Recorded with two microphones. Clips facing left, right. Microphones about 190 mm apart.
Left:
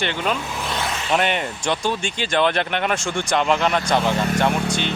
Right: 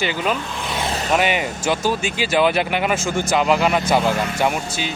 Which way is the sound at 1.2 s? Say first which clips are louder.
Right 2 dB; 5° right (ahead or behind).